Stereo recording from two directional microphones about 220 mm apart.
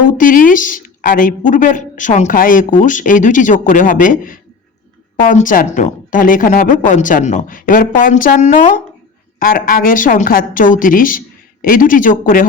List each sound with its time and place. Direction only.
0.2 s speech: 40° left (ahead or behind)